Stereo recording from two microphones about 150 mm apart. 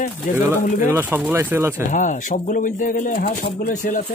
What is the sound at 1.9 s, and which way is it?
Speech, 60° left (ahead or behind).